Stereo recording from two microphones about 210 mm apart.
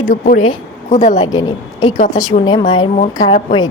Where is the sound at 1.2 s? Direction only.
20° left (ahead or behind).